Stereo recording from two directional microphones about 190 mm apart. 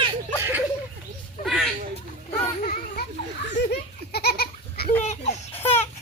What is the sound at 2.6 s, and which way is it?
Children playing, 45° left (ahead or behind).